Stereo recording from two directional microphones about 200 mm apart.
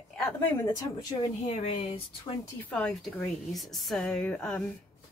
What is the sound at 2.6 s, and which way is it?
A woman's voice, 5° left (ahead or behind).